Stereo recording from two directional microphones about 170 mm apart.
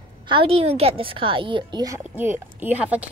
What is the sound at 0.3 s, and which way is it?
A woman's voice, 35° right (ahead or behind).